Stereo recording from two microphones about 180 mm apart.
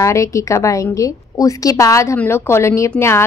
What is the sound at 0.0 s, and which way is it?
Speech, 15° left (ahead or behind).